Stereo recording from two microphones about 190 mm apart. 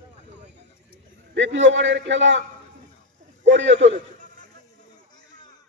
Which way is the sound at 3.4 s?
75° right (ahead or behind).